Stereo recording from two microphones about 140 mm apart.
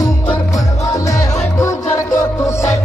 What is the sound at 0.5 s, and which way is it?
Music, 25° left (ahead or behind).